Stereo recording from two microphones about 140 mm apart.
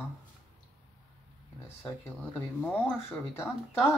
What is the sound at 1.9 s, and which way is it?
Speech, 10° left (ahead or behind).